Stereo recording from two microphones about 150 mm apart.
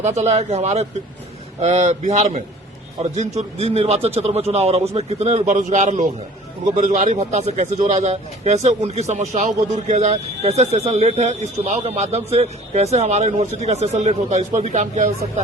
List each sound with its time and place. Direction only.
0.0 s speech: 50° right (ahead or behind)